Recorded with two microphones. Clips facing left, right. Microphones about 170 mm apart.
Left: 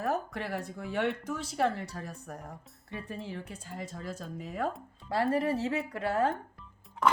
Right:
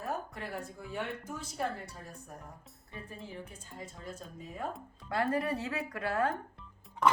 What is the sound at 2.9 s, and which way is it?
Speech, 75° left (ahead or behind).